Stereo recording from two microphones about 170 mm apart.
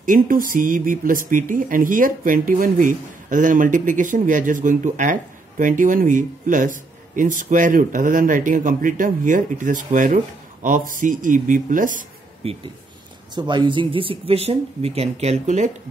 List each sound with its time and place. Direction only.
0.0 s speech: 55° right (ahead or behind)
12.4 s speech: 40° right (ahead or behind)
13.3 s speech: 25° right (ahead or behind); by 15.7 s 45° right (ahead or behind)